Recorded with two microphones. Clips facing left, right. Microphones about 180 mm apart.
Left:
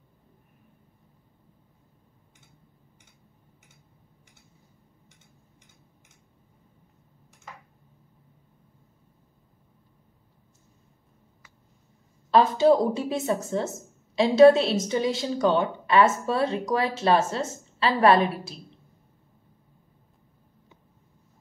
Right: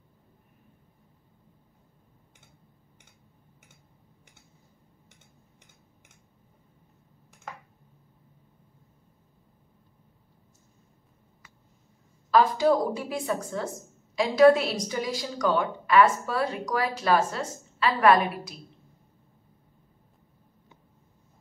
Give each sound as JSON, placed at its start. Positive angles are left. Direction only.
{"t": 12.3, "sound": "speech", "side_deg": 25}